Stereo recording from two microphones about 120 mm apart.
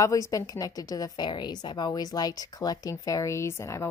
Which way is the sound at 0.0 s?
25° left (ahead or behind).